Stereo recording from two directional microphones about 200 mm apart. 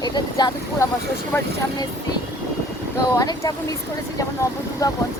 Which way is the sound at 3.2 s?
20° left (ahead or behind).